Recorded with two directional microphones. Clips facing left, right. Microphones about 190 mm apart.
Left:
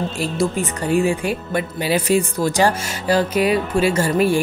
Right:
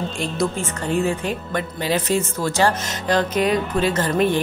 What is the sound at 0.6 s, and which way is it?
Speech, 10° left (ahead or behind).